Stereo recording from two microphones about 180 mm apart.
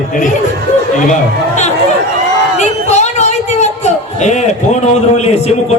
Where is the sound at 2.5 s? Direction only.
40° left (ahead or behind).